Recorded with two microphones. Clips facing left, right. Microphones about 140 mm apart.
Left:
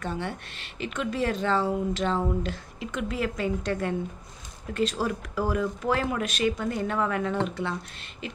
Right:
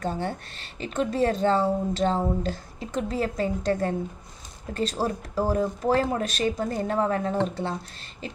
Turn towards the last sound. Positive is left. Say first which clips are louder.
# right 2 dB
turn(degrees=-35)  # may be behind; listen again after turning